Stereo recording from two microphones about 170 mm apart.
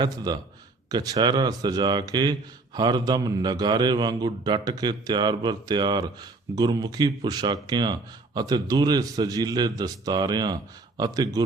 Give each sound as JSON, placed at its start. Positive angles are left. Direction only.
{"t": 0.0, "sound": "speech", "side_deg": -25}